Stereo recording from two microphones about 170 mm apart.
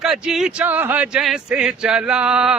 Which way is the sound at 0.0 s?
Centre (ahead or behind).